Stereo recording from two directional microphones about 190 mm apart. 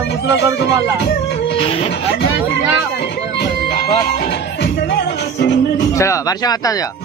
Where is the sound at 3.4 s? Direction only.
55° left (ahead or behind).